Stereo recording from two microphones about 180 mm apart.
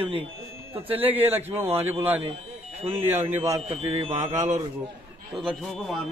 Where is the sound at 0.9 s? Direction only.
10° right (ahead or behind).